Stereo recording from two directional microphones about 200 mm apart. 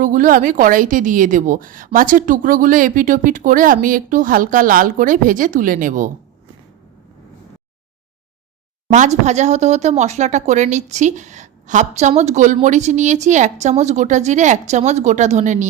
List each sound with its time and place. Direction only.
0.0 s speech: 40° right (ahead or behind)
8.9 s speech: 35° right (ahead or behind)